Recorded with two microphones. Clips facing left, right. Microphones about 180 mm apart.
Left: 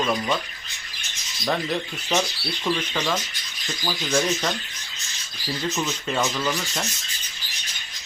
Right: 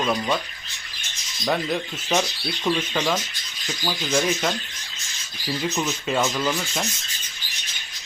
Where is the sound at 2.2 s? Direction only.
10° right (ahead or behind).